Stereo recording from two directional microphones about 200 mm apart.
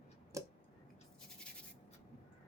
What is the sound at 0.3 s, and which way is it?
Tick-tock, 15° right (ahead or behind).